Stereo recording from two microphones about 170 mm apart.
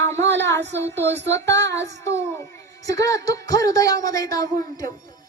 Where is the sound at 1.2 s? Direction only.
90° right.